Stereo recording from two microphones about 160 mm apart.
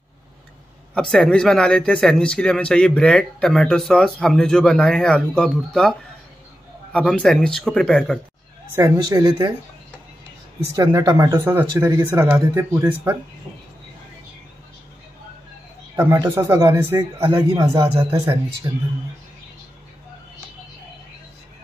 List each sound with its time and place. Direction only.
0.9 s speech: 5° left (ahead or behind)
8.7 s speech: 20° right (ahead or behind)
10.8 s speech: 20° right (ahead or behind)
16.0 s speech: 20° right (ahead or behind)